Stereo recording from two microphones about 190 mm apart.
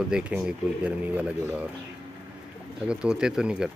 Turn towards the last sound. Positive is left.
turn(degrees=-5)  # may be behind; listen again after turning